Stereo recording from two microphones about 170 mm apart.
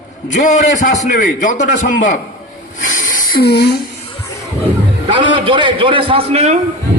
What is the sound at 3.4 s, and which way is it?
Speech, 70° left (ahead or behind).